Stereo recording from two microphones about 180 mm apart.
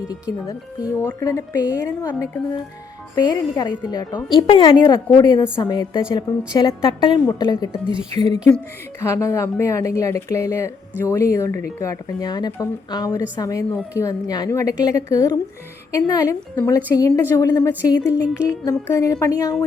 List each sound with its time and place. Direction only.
0.1 s a woman's voice: 20° left (ahead or behind)